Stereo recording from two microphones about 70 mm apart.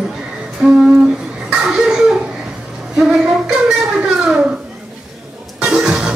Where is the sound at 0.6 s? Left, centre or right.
Centre.